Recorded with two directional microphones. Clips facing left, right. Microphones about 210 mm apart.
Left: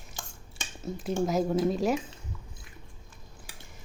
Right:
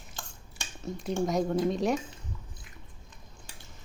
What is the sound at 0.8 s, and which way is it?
A woman's voice, 5° left (ahead or behind).